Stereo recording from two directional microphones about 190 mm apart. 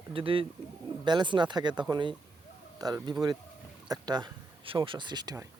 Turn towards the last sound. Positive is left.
turn(degrees=-20)  # may be behind; listen again after turning